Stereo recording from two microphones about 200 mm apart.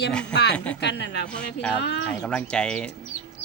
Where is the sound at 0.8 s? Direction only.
60° left (ahead or behind).